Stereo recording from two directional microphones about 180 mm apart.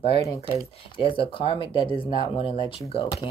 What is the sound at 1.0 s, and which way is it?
Speech, 30° left (ahead or behind).